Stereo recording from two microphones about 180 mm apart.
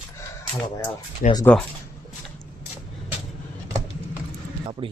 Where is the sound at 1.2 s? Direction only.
45° left (ahead or behind).